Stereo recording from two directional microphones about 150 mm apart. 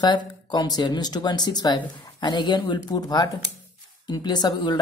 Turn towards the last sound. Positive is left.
turn(degrees=25)  # may be behind; listen again after turning